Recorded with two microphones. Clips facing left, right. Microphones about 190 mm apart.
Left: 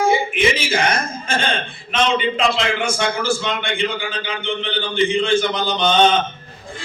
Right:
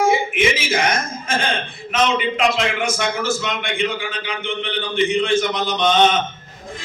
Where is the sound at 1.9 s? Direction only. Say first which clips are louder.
Even; 30° left (ahead or behind).